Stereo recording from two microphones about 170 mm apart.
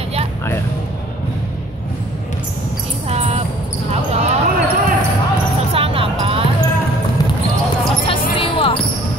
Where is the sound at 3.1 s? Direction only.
40° right (ahead or behind).